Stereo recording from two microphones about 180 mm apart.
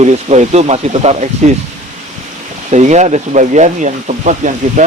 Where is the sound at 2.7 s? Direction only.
40° right (ahead or behind).